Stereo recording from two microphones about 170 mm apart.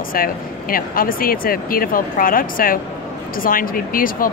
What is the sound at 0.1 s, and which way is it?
Speech, 55° left (ahead or behind).